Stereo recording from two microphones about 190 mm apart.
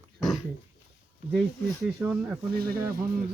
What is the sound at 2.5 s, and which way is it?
Speech, 55° right (ahead or behind).